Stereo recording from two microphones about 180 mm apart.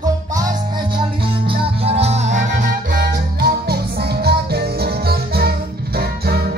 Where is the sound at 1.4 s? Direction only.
30° right (ahead or behind).